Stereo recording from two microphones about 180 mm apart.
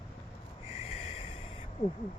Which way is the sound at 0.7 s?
35° left (ahead or behind).